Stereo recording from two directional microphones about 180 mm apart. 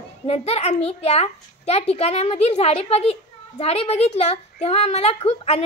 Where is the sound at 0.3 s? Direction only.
35° left (ahead or behind).